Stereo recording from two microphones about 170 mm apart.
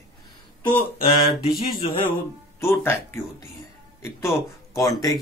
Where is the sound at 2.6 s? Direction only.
15° left (ahead or behind).